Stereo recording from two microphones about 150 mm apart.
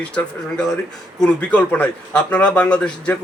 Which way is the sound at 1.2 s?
10° left (ahead or behind).